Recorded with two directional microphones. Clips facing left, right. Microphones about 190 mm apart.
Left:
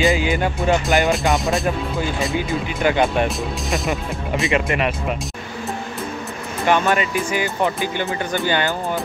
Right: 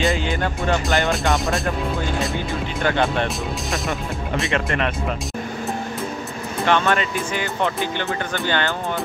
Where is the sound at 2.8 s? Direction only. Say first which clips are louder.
Left 3 dB; 15° left (ahead or behind).